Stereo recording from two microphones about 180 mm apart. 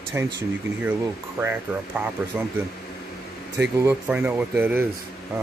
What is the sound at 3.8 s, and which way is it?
Speech, 10° right (ahead or behind).